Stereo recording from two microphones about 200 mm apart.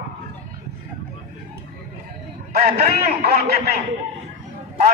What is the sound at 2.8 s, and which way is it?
Speech, 30° right (ahead or behind).